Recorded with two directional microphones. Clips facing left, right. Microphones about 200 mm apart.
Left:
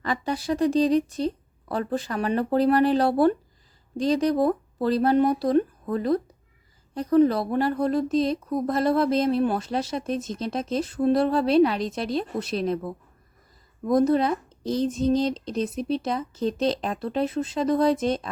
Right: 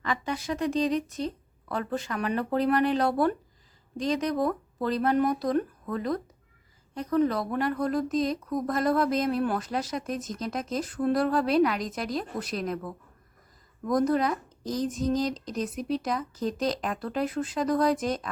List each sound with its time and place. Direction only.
0.0 s speech: 35° left (ahead or behind)